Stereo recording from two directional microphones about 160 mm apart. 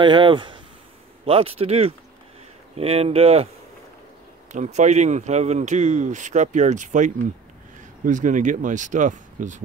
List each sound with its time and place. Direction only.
0.0 s speech: 30° right (ahead or behind)
4.5 s speech: 45° right (ahead or behind)